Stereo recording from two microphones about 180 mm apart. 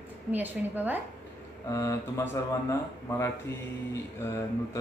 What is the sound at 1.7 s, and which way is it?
Speech, 15° left (ahead or behind).